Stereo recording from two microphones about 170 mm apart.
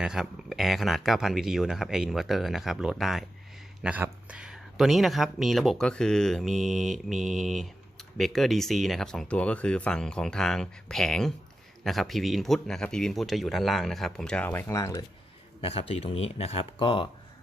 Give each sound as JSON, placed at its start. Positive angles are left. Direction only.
{"t": 0.0, "sound": "speech", "side_deg": -5}
{"t": 15.6, "sound": "speech", "side_deg": 35}